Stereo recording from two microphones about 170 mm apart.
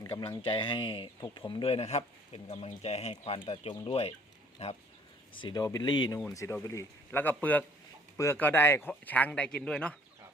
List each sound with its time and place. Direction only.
0.0 s speech: 30° left (ahead or behind)
5.4 s speech: 25° left (ahead or behind); by 10.0 s 5° left (ahead or behind)